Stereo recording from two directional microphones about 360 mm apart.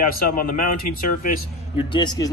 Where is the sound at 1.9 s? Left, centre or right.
Centre.